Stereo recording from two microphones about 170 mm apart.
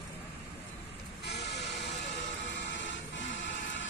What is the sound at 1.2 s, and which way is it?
Vehicle, 85° left.